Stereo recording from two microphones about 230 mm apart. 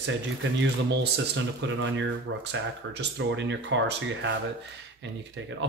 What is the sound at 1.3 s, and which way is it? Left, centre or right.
Speech, right.